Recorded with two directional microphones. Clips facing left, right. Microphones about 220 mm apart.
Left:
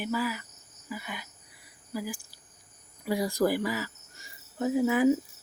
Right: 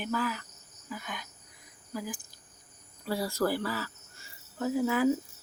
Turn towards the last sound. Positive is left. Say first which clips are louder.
# left 3 dB
turn(degrees=15)  # may be behind; listen again after turning